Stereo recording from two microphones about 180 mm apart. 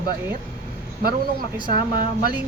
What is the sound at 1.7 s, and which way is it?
Speech, 55° right (ahead or behind).